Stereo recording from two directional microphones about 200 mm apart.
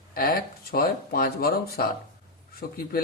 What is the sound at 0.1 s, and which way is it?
Speech, 45° left (ahead or behind).